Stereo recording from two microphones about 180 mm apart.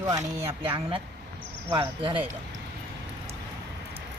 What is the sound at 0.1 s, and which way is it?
Speech, 25° right (ahead or behind).